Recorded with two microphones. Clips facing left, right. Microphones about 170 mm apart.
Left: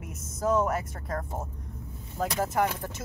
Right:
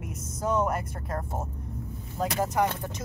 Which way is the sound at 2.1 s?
5° left (ahead or behind).